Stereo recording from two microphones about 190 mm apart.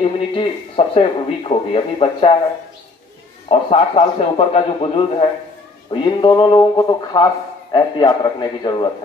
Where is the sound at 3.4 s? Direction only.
30° left (ahead or behind).